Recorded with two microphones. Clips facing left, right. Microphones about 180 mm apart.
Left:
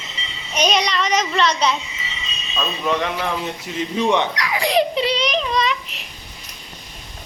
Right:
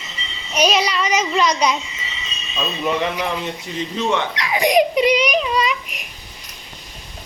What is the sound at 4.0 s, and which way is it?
Speech, 15° left (ahead or behind).